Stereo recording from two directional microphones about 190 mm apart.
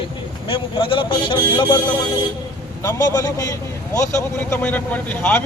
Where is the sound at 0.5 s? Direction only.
25° left (ahead or behind).